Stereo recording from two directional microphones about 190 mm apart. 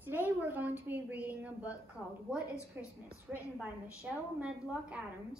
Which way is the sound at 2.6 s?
15° left (ahead or behind).